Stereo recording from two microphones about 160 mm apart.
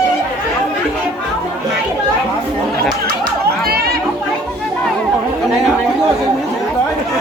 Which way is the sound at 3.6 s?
70° right (ahead or behind).